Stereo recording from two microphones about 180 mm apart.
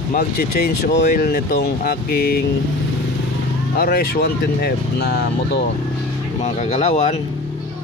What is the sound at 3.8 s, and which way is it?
Speech, 60° left (ahead or behind).